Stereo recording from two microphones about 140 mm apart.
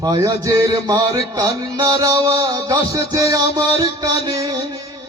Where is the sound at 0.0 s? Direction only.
25° right (ahead or behind).